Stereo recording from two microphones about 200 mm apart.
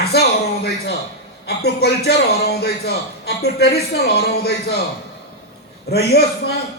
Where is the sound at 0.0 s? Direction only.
55° left (ahead or behind).